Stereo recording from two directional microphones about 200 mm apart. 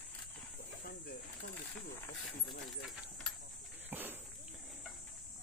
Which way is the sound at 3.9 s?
10° right (ahead or behind).